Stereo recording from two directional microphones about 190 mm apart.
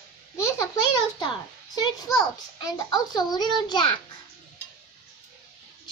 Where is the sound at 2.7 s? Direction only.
20° left (ahead or behind).